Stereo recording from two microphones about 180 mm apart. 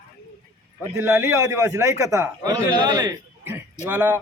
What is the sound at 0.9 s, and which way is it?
A man's voice, 15° right (ahead or behind).